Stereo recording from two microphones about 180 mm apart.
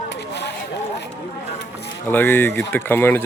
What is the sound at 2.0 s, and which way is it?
Speech, 10° left (ahead or behind).